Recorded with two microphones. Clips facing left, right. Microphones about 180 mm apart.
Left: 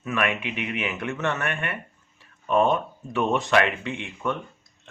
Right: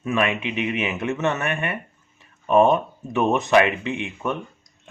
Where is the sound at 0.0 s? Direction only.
25° right (ahead or behind).